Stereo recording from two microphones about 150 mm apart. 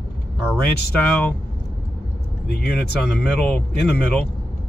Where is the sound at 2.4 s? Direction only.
90° left.